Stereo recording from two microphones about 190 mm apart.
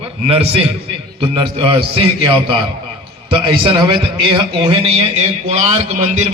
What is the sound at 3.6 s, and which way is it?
A man's voice, 25° right (ahead or behind).